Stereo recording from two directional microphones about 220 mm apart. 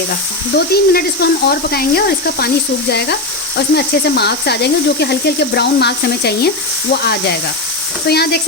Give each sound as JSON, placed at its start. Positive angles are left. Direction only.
{"t": 0.5, "sound": "speech", "side_deg": 45}